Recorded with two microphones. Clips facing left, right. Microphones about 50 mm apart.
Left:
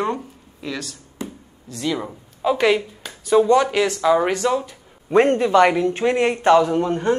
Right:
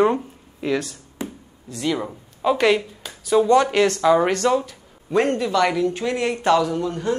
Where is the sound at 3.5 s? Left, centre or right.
Centre.